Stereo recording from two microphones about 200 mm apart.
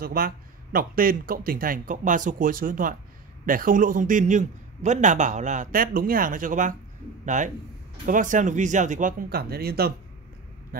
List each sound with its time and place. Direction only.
0.0 s a man's voice: 45° right (ahead or behind)